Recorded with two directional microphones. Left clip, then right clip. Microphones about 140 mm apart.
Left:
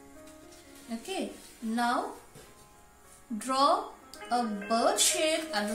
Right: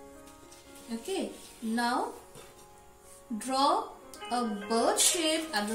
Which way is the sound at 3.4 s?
25° left (ahead or behind).